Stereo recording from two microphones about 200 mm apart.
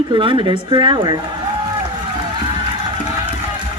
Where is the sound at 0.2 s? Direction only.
25° right (ahead or behind).